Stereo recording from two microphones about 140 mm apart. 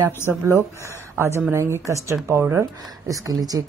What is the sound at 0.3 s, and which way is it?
Speech, 20° right (ahead or behind).